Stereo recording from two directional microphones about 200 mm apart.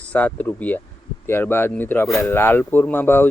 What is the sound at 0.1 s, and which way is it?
Speech, 10° left (ahead or behind).